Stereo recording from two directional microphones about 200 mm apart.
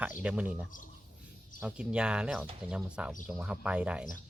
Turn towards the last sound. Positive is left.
turn(degrees=-5)  # may be behind; listen again after turning